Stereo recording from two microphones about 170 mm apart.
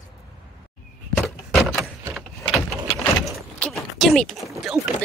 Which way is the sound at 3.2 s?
Centre (ahead or behind).